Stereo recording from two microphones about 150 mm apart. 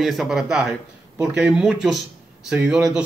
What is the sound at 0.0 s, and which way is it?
Speech, centre (ahead or behind).